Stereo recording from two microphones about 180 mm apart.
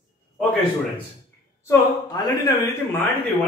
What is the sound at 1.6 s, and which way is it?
Speech, 20° left (ahead or behind).